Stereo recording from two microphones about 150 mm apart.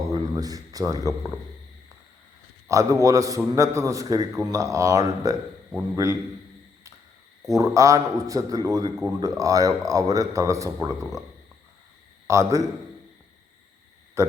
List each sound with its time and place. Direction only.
0.1 s speech: 25° right (ahead or behind)
2.6 s a man's voice: 20° right (ahead or behind)
7.5 s a man's voice: 20° right (ahead or behind)
12.3 s a man's voice: 20° right (ahead or behind)
14.2 s speech: 20° right (ahead or behind)